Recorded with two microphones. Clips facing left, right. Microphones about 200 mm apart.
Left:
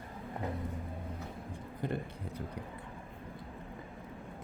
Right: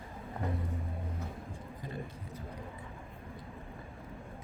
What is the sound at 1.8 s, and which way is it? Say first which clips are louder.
Speech: left 7 dB; 65° left (ahead or behind).